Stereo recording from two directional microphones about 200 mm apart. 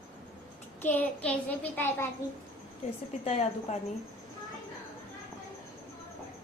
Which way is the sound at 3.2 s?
30° left (ahead or behind).